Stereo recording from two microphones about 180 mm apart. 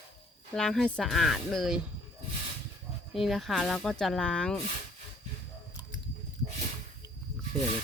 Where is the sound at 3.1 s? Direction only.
Centre (ahead or behind).